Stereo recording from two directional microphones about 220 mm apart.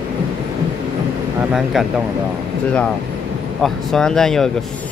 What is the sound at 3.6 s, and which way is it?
Speech, centre (ahead or behind).